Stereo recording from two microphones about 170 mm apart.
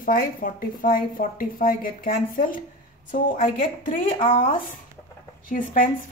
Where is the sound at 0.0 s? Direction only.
55° left (ahead or behind).